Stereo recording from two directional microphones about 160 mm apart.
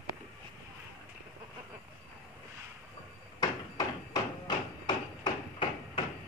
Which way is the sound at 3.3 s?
25° left (ahead or behind).